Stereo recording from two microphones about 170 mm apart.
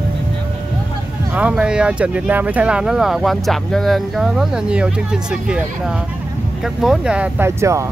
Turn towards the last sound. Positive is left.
turn(degrees=-15)  # may be behind; listen again after turning